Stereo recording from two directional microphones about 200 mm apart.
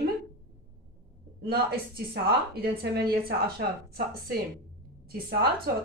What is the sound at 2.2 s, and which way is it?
Speech, 50° right (ahead or behind).